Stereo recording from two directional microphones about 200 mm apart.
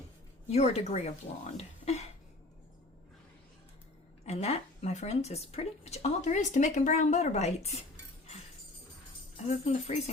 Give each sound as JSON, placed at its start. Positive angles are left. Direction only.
{"t": 0.5, "sound": "speech", "side_deg": 30}
{"t": 1.5, "sound": "a sound", "side_deg": 30}
{"t": 4.3, "sound": "speech", "side_deg": 35}
{"t": 9.5, "sound": "speech", "side_deg": 35}